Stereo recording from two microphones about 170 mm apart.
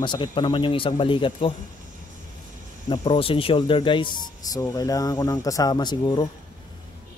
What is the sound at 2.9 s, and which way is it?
Speech, 30° left (ahead or behind).